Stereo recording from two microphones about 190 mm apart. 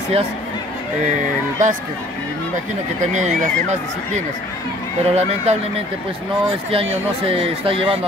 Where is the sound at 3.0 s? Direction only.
40° right (ahead or behind).